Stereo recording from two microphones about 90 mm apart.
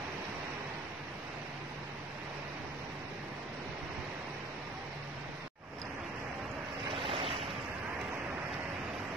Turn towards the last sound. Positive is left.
turn(degrees=-90)